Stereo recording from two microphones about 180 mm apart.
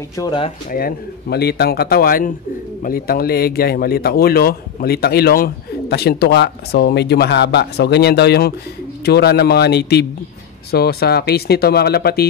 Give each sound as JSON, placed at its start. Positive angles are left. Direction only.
{"t": 0.2, "sound": "speech", "side_deg": 25}
{"t": 0.7, "sound": "speech", "side_deg": 55}